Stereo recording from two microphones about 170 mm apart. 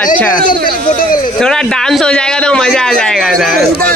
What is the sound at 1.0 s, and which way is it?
Speech, 55° left (ahead or behind).